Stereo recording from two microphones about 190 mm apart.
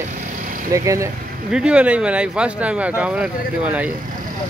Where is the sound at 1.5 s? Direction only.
5° right (ahead or behind).